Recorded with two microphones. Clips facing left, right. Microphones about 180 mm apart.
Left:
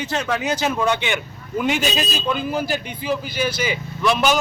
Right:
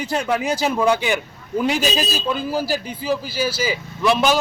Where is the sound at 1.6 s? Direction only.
35° right (ahead or behind).